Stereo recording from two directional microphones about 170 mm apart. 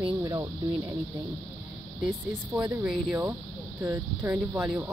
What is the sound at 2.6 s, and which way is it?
Speech, 10° right (ahead or behind).